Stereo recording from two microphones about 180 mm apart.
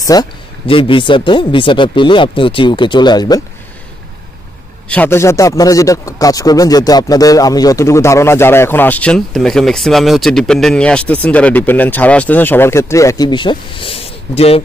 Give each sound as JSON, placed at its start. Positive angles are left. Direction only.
{"t": 0.0, "sound": "speech", "side_deg": 20}
{"t": 4.8, "sound": "a man's voice", "side_deg": 10}